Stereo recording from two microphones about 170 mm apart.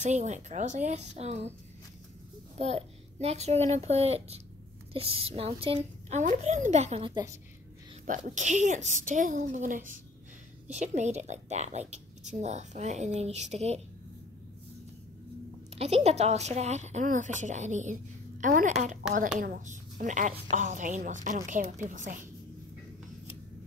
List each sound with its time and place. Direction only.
0.0 s a woman's voice: 45° right (ahead or behind)
2.6 s a woman's voice: 40° right (ahead or behind)
7.1 s a woman's voice: 25° right (ahead or behind)
8.4 s a woman's voice: 45° right (ahead or behind)
15.7 s a woman's voice: 40° right (ahead or behind)